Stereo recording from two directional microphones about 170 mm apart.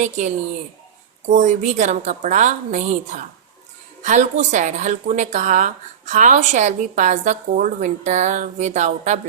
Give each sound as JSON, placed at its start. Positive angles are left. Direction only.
{"t": 0.0, "sound": "speech", "side_deg": -45}